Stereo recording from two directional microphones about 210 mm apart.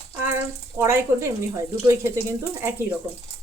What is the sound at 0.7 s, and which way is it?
Speech, 15° right (ahead or behind).